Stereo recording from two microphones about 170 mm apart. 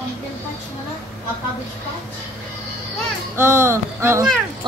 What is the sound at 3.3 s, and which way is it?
Speech, 15° right (ahead or behind).